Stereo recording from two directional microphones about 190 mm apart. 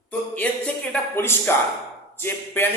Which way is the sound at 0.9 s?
10° left (ahead or behind).